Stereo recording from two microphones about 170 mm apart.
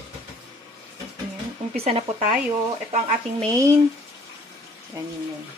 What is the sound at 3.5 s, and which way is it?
Speech, 20° right (ahead or behind).